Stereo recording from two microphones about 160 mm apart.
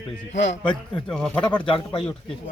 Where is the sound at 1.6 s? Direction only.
35° left (ahead or behind).